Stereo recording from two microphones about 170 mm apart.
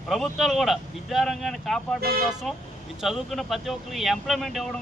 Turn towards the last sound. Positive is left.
turn(degrees=0)  # may be behind; listen again after turning